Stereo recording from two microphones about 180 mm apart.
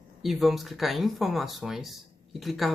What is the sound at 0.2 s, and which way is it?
Speech, centre (ahead or behind).